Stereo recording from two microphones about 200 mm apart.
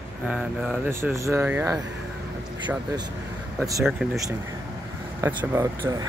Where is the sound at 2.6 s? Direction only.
20° right (ahead or behind).